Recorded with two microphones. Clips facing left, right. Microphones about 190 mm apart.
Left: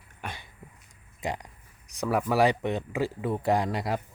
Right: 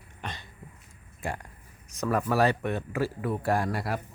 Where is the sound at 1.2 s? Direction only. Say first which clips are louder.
Left 2 dB; 20° left (ahead or behind).